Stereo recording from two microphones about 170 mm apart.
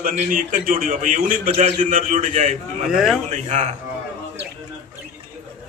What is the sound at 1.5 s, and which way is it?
Speech, 35° right (ahead or behind).